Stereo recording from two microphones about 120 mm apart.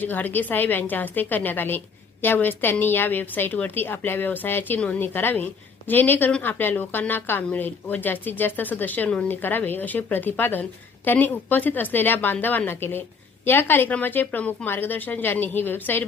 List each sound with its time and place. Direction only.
0.0 s a woman's voice: 15° left (ahead or behind)